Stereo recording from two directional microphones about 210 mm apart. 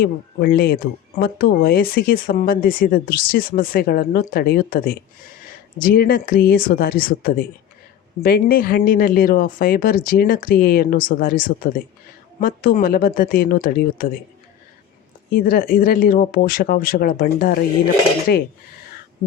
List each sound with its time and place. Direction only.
0.0 s speech: 45° left (ahead or behind)
15.3 s speech: 45° left (ahead or behind)